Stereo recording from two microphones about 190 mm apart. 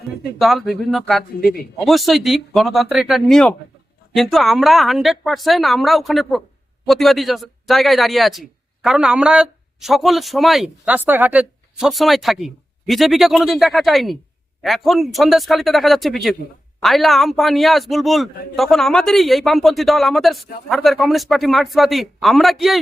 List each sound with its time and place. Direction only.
0.3 s a man's voice: centre (ahead or behind)